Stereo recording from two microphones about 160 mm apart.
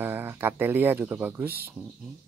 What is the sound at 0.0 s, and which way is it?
Speech, 10° right (ahead or behind).